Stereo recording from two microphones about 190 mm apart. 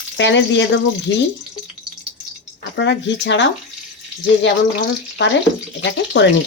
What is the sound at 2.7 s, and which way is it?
Speech, 70° left (ahead or behind).